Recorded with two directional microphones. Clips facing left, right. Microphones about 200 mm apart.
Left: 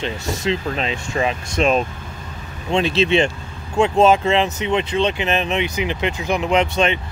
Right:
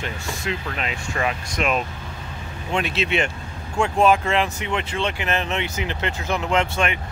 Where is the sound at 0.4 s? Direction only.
25° left (ahead or behind).